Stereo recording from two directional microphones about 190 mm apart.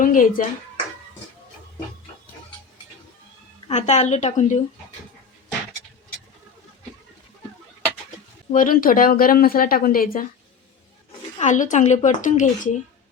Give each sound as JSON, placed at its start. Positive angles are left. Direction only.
{"t": 0.0, "sound": "speech", "side_deg": 45}
{"t": 3.7, "sound": "a woman's voice", "side_deg": 35}
{"t": 8.5, "sound": "speech", "side_deg": 45}
{"t": 11.3, "sound": "a woman's voice", "side_deg": 40}